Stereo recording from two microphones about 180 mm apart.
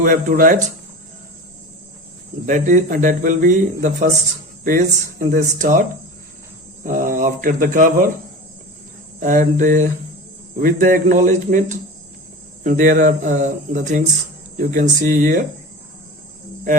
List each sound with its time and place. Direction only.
0.0 s speech: 50° right (ahead or behind)
2.5 s speech: 45° right (ahead or behind)
5.2 s speech: 45° right (ahead or behind)
6.8 s speech: 45° right (ahead or behind)
9.2 s speech: 45° right (ahead or behind)